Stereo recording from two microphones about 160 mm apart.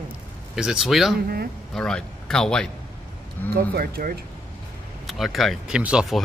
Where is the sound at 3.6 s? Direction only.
70° right (ahead or behind).